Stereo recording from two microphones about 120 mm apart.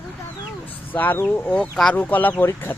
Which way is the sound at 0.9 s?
15° left (ahead or behind).